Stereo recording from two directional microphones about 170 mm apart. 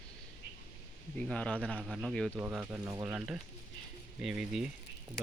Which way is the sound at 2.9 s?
20° right (ahead or behind).